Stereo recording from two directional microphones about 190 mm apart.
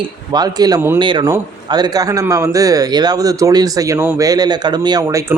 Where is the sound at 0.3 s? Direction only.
20° right (ahead or behind).